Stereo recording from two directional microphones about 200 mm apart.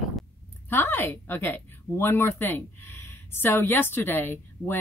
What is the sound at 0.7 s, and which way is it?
Speech, 10° left (ahead or behind).